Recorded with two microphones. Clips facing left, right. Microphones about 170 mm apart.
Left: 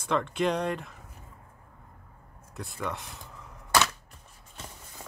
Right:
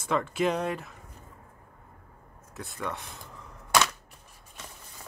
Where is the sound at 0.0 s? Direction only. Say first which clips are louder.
Even; 5° right (ahead or behind).